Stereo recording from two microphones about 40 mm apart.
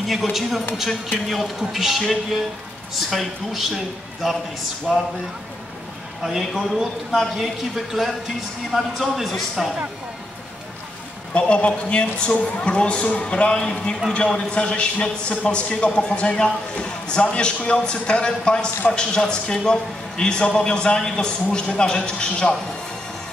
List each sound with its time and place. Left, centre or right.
0.1 s a man's voice: centre
4.9 s a man's voice: right
6.6 s a man's voice: centre
11.3 s a man's voice: left